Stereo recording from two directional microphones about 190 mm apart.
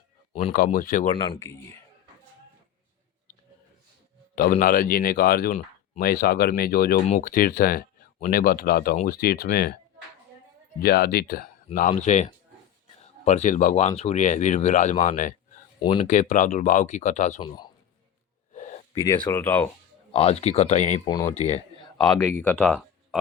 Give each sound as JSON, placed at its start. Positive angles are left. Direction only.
{"t": 0.5, "sound": "speech", "side_deg": 45}
{"t": 1.1, "sound": "speech", "side_deg": 25}
{"t": 4.6, "sound": "speech", "side_deg": 50}
{"t": 10.8, "sound": "speech", "side_deg": 55}
{"t": 18.5, "sound": "a sound", "side_deg": 40}
{"t": 18.9, "sound": "speech", "side_deg": 15}
{"t": 20.1, "sound": "speech", "side_deg": 35}
{"t": 21.1, "sound": "speech", "side_deg": 20}
{"t": 21.3, "sound": "speech", "side_deg": 35}
{"t": 21.9, "sound": "speech", "side_deg": 20}